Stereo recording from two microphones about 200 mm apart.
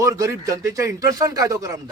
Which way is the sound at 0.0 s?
15° right (ahead or behind).